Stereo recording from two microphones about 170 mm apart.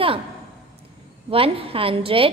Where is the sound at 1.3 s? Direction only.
35° right (ahead or behind).